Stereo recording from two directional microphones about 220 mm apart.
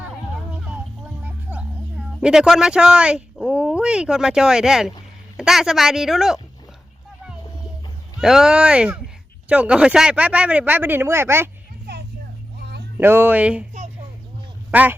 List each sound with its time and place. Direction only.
1.2 s speech: 5° right (ahead or behind)
8.2 s speech: centre (ahead or behind)
12.5 s a sound: 50° right (ahead or behind)
13.0 s speech: 10° right (ahead or behind)
14.7 s speech: 5° right (ahead or behind)